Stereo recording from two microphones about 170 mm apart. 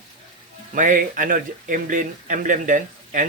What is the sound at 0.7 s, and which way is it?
Speech, 50° right (ahead or behind).